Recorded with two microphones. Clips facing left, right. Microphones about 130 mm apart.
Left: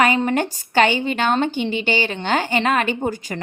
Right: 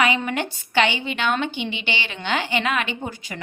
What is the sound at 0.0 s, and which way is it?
Speech, 40° left (ahead or behind).